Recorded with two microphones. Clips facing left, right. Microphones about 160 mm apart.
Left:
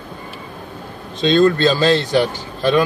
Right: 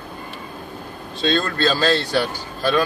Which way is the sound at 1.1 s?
20° left (ahead or behind).